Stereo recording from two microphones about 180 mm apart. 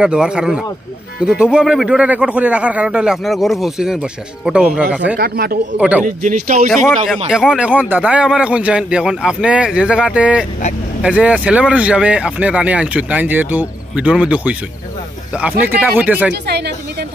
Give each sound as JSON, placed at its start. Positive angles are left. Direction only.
{"t": 0.0, "sound": "speech", "side_deg": -5}
{"t": 5.1, "sound": "speech", "side_deg": -55}
{"t": 5.8, "sound": "speech", "side_deg": -5}
{"t": 6.0, "sound": "speech", "side_deg": -45}
{"t": 7.2, "sound": "speech", "side_deg": -5}
{"t": 15.6, "sound": "speech", "side_deg": -10}
{"t": 16.4, "sound": "speech", "side_deg": -65}